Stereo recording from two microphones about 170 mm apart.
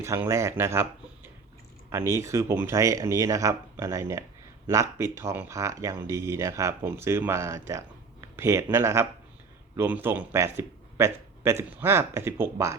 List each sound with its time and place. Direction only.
0.0 s speech: 15° right (ahead or behind)
1.9 s speech: 15° right (ahead or behind)